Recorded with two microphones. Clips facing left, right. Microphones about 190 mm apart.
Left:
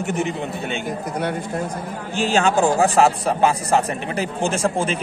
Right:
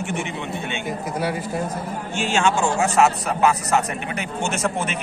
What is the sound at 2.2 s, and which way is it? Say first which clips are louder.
A man's voice: left 3 dB; 35° left (ahead or behind).